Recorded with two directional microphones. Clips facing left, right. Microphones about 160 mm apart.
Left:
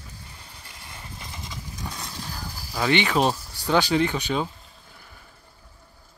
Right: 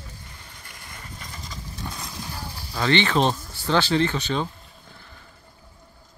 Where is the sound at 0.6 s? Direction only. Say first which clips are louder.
Even; 25° left (ahead or behind).